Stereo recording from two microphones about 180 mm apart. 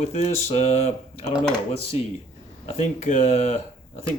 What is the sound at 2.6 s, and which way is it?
Speech, 40° left (ahead or behind).